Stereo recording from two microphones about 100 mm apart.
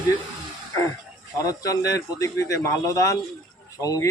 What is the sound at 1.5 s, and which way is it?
A man's voice, 35° left (ahead or behind).